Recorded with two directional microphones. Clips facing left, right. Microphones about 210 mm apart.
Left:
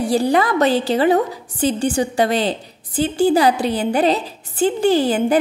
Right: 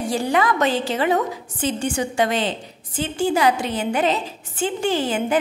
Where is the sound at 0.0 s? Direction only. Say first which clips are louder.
Left 4 dB; 35° left (ahead or behind).